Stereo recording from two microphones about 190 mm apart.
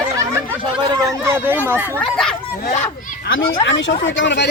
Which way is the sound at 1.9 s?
5° left (ahead or behind).